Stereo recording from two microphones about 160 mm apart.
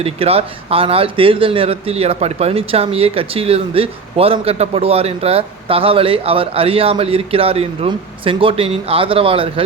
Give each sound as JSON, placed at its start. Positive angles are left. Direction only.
{"t": 0.0, "sound": "speech", "side_deg": -40}